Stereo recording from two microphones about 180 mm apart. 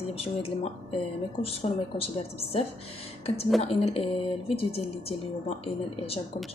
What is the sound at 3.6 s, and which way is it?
Speech, 35° left (ahead or behind).